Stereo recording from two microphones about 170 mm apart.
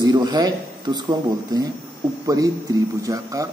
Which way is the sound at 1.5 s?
20° right (ahead or behind).